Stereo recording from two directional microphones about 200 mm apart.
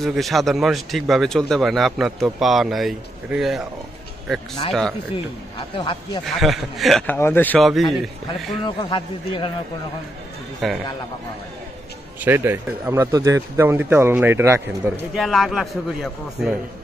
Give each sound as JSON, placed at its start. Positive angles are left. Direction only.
{"t": 0.0, "sound": "speech", "side_deg": 0}
{"t": 5.1, "sound": "speech", "side_deg": 25}
{"t": 6.2, "sound": "speech", "side_deg": 0}
{"t": 8.6, "sound": "speech", "side_deg": 25}
{"t": 10.6, "sound": "speech", "side_deg": 0}
{"t": 12.2, "sound": "speech", "side_deg": -10}
{"t": 15.1, "sound": "speech", "side_deg": 0}